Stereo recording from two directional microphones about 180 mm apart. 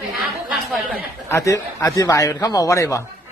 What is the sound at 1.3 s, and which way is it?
A man's voice, 15° left (ahead or behind).